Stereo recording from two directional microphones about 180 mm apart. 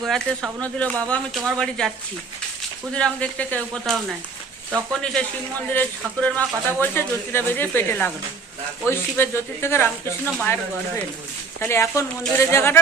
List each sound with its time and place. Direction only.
0.0 s speech: centre (ahead or behind)
2.9 s a woman's voice: 5° left (ahead or behind)